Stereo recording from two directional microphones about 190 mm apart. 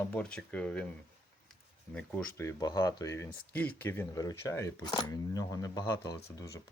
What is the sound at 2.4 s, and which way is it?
Speech, 20° left (ahead or behind).